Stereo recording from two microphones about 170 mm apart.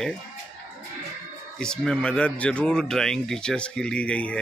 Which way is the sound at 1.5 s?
5° left (ahead or behind).